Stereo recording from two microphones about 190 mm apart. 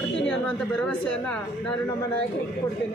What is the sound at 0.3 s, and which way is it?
Speech, 5° left (ahead or behind).